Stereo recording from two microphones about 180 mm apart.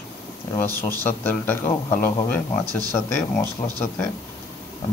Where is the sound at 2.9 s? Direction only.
15° left (ahead or behind).